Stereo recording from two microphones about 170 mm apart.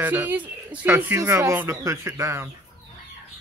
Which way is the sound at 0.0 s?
10° right (ahead or behind).